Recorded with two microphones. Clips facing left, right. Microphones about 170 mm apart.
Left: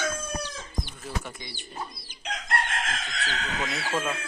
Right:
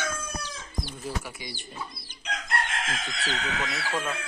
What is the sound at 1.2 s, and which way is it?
Speech, 10° right (ahead or behind).